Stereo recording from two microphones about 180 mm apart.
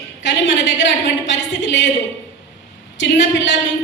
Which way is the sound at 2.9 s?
90° left.